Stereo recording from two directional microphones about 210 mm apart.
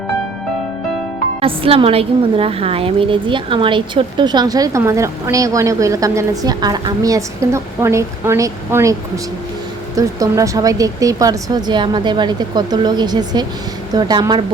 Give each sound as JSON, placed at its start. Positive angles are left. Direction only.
{"t": 1.4, "sound": "a woman's voice", "side_deg": -25}